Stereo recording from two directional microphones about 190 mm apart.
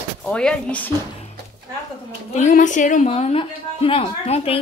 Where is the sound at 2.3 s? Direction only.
40° left (ahead or behind).